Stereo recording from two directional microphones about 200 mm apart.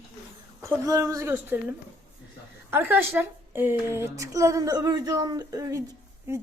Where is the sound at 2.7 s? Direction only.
10° right (ahead or behind).